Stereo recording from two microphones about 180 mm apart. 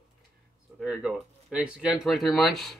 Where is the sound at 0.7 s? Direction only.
5° right (ahead or behind).